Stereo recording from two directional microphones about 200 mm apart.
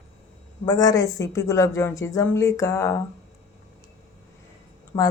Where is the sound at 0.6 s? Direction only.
20° left (ahead or behind).